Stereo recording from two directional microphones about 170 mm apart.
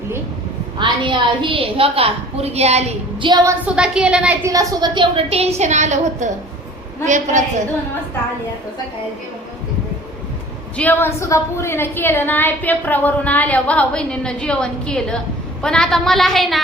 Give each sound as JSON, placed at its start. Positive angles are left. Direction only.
{"t": 0.8, "sound": "a woman's voice", "side_deg": -30}
{"t": 3.7, "sound": "a woman's voice", "side_deg": -5}
{"t": 4.4, "sound": "a woman's voice", "side_deg": -20}
{"t": 10.8, "sound": "a woman's voice", "side_deg": 10}